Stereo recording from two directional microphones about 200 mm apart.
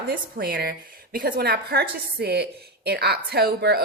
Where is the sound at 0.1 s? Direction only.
50° right (ahead or behind).